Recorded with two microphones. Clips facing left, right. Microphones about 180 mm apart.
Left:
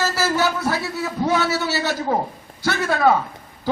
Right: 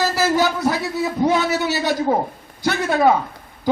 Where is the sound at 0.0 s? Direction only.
15° right (ahead or behind).